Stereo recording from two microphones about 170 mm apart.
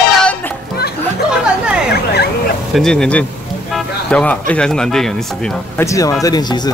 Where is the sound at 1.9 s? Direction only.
70° left (ahead or behind).